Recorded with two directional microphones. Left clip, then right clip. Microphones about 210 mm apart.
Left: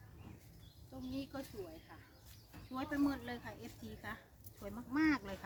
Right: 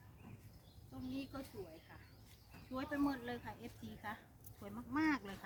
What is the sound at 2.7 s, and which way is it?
Speech, 5° left (ahead or behind).